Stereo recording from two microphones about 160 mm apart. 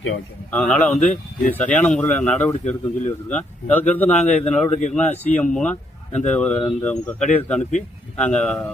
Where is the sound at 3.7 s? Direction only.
10° left (ahead or behind).